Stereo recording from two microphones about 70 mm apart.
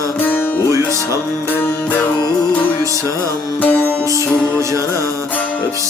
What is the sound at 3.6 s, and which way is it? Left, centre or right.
Music, left.